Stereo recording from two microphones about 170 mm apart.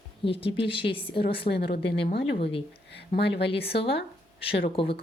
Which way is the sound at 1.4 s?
70° left (ahead or behind).